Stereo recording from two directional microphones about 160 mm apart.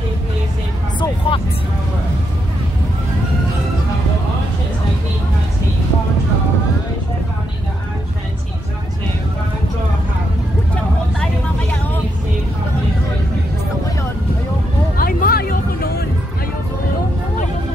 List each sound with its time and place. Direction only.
0.9 s speech: 30° left (ahead or behind)
15.0 s music: 65° left (ahead or behind)